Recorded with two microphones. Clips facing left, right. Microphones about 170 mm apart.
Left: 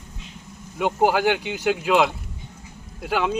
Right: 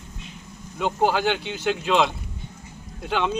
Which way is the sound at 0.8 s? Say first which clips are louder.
Left 2 dB; 10° left (ahead or behind).